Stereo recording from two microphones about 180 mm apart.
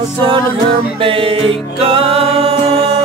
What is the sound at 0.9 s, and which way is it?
Music, 30° right (ahead or behind).